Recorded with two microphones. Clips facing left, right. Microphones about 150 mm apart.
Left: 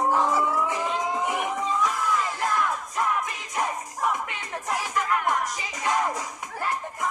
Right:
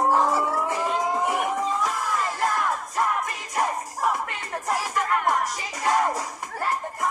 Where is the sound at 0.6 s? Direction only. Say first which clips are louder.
Right 2 dB; 5° right (ahead or behind).